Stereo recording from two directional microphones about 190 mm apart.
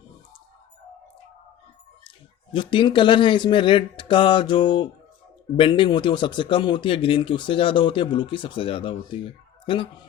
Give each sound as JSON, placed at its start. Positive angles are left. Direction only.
{"t": 2.0, "sound": "a man's voice", "side_deg": 25}